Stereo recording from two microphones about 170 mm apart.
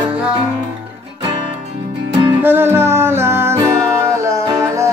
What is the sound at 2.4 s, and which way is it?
Music, 15° right (ahead or behind).